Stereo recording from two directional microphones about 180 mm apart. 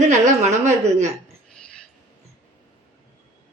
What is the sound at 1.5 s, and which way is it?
Cutlery, 5° left (ahead or behind).